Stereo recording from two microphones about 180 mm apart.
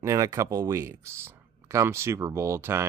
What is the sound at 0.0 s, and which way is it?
Speech, 20° right (ahead or behind).